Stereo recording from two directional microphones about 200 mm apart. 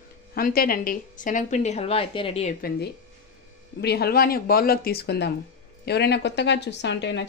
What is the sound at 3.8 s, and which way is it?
A woman's voice, 50° left (ahead or behind).